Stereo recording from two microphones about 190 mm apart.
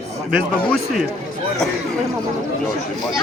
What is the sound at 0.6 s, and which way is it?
Speech, 5° left (ahead or behind).